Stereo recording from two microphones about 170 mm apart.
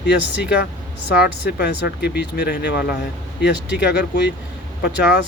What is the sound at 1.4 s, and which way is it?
Speech, 70° left (ahead or behind).